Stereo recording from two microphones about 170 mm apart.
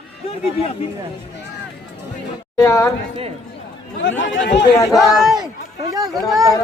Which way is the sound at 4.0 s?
90° left.